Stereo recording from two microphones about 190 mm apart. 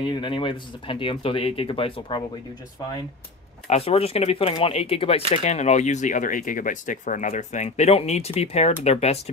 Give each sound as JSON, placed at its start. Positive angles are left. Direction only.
{"t": 0.0, "sound": "speech", "side_deg": 25}
{"t": 3.6, "sound": "speech", "side_deg": 35}